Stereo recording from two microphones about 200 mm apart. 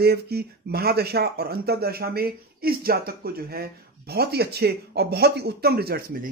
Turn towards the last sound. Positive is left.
turn(degrees=-50)  # may be behind; listen again after turning